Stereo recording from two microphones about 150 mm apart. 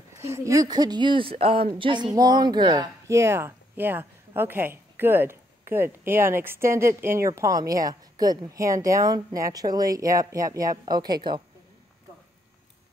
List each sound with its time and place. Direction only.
0.1 s speech: 20° right (ahead or behind)